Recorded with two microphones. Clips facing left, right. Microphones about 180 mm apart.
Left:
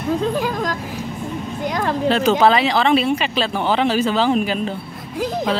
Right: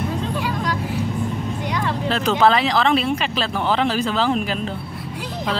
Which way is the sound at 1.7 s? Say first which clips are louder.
Left 3 dB; 45° left (ahead or behind).